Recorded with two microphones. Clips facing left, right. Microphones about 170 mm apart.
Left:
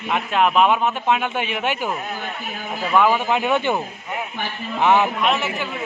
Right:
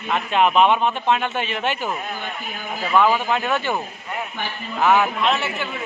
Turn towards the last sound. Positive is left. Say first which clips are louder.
# left 1 dB
turn(degrees=0)  # may be behind; listen again after turning